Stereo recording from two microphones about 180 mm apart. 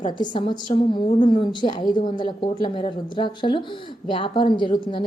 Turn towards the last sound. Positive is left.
turn(degrees=30)  # may be behind; listen again after turning